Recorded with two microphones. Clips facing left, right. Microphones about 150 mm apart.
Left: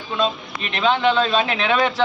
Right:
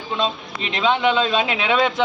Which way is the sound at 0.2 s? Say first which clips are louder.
Left 4 dB; 15° right (ahead or behind).